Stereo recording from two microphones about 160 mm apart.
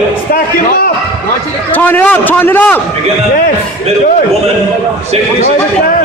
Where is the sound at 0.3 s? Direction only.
65° left (ahead or behind).